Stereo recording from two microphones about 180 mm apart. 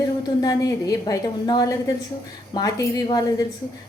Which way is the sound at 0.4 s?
20° left (ahead or behind).